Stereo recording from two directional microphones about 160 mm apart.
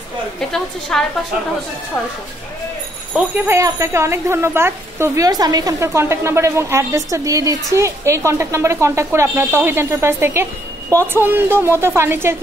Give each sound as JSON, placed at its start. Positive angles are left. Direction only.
{"t": 0.5, "sound": "a woman's voice", "side_deg": 5}
{"t": 3.2, "sound": "a woman's voice", "side_deg": -15}